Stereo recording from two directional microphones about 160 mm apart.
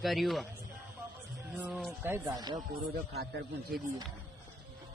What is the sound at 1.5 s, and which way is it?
Speech, 5° right (ahead or behind).